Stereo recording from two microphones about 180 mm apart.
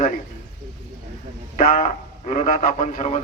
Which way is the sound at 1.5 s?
45° left (ahead or behind).